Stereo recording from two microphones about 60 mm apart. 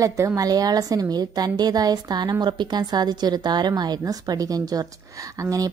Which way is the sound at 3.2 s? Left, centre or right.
Right.